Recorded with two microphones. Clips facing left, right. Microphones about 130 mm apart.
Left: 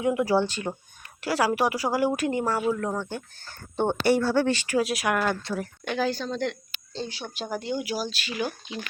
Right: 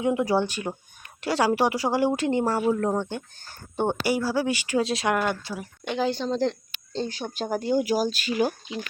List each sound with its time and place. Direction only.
0.0 s a woman's voice: 20° right (ahead or behind)
1.2 s a woman's voice: 25° right (ahead or behind)
3.0 s a woman's voice: 20° right (ahead or behind)
3.8 s speech: 10° right (ahead or behind)
4.8 s a woman's voice: 25° right (ahead or behind); by 8.5 s 40° right (ahead or behind)